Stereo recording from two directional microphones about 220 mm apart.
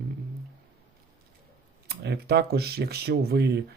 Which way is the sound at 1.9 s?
45° right (ahead or behind).